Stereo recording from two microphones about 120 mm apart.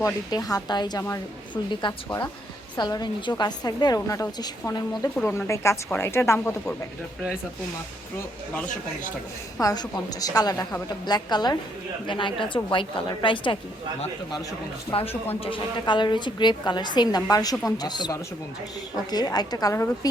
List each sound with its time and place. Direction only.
0.0 s a woman's voice: 30° left (ahead or behind)
9.6 s a woman's voice: 35° left (ahead or behind)
15.3 s a woman's voice: 45° left (ahead or behind); by 20.1 s 25° left (ahead or behind)